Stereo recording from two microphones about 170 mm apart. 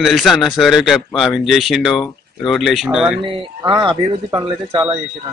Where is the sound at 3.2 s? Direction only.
25° right (ahead or behind).